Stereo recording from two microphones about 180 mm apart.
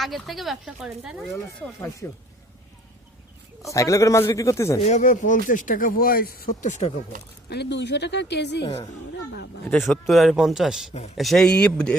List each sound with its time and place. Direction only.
0.0 s speech: centre (ahead or behind)
2.0 s speech: 10° left (ahead or behind)
3.6 s speech: 15° left (ahead or behind)
4.8 s speech: 40° left (ahead or behind)
7.5 s speech: 70° left (ahead or behind)
9.7 s speech: centre (ahead or behind)